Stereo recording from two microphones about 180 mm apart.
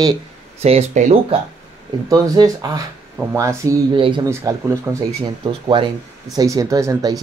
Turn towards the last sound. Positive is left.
turn(degrees=-20)  # may be behind; listen again after turning